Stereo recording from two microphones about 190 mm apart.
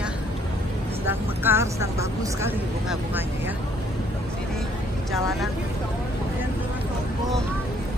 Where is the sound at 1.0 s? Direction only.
10° right (ahead or behind).